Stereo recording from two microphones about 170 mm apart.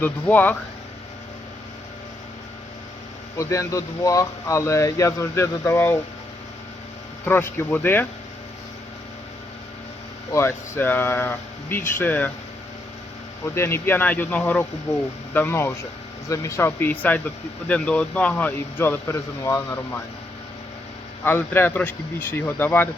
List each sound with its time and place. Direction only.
0.0 s speech: 10° left (ahead or behind)
3.3 s speech: 20° left (ahead or behind)
7.3 s speech: 10° left (ahead or behind)
10.3 s speech: 15° left (ahead or behind)
13.4 s speech: 15° left (ahead or behind)
21.2 s speech: 10° left (ahead or behind)